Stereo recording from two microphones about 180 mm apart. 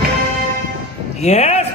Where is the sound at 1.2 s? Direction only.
40° left (ahead or behind).